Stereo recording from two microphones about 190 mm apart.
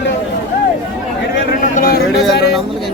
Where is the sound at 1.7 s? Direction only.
50° left (ahead or behind).